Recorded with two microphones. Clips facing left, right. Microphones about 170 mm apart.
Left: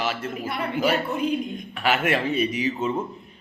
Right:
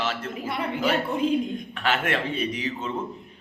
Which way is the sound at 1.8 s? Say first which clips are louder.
Left 3 dB; 10° left (ahead or behind).